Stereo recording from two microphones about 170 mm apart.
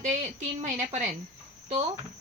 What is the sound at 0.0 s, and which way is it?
A woman's voice, 45° right (ahead or behind).